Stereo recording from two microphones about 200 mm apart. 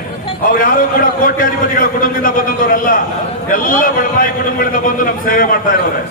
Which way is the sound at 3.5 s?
45° left (ahead or behind).